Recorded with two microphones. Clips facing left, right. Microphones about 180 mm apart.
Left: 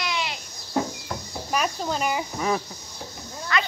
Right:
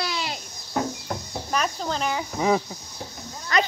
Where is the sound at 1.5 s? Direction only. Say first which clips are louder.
Left 1 dB; 5° left (ahead or behind).